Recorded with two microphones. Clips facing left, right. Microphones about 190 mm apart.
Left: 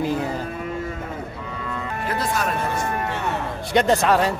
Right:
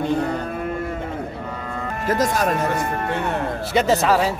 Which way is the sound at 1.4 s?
50° right (ahead or behind).